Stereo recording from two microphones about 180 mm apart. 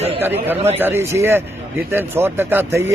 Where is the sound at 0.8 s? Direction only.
15° right (ahead or behind).